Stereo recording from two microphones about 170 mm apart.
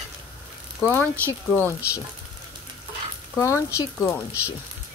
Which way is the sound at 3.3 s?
15° left (ahead or behind).